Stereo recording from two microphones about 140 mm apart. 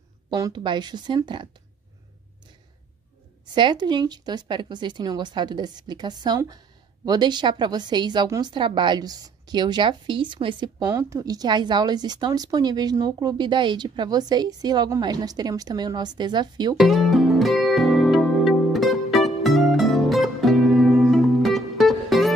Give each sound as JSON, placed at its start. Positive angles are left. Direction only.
{"t": 0.3, "sound": "a woman's voice", "side_deg": -30}
{"t": 3.5, "sound": "a woman's voice", "side_deg": -30}
{"t": 10.9, "sound": "a woman's voice", "side_deg": -20}
{"t": 16.7, "sound": "music", "side_deg": 0}